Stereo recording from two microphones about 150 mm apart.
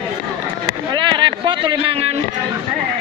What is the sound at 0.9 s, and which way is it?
Speech, 30° right (ahead or behind).